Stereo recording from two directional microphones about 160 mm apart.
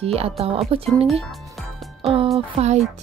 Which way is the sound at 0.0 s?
40° right (ahead or behind).